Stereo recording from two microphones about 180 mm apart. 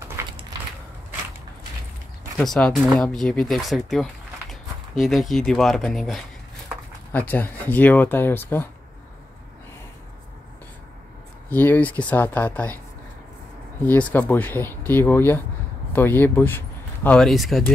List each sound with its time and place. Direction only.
0.3 s a sound: 25° right (ahead or behind)
2.3 s speech: centre (ahead or behind)
11.5 s speech: 10° left (ahead or behind)
13.9 s speech: 10° left (ahead or behind)